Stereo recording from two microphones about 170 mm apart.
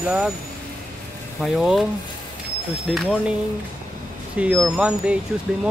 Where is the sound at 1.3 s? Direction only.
Centre (ahead or behind).